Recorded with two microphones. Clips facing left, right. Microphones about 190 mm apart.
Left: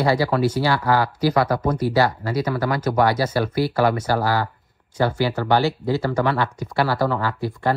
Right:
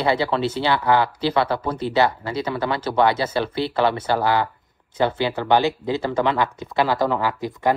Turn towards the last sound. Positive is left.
turn(degrees=-15)  # may be behind; listen again after turning